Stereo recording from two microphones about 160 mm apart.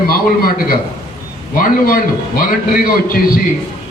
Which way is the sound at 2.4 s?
60° left (ahead or behind).